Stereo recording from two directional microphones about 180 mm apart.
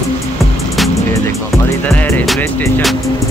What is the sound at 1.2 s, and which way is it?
Music, 15° left (ahead or behind).